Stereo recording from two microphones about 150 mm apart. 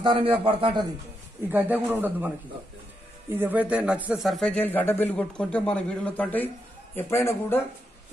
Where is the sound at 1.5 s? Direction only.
10° right (ahead or behind).